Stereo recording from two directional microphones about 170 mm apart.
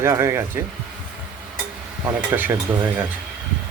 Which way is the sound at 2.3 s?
10° right (ahead or behind).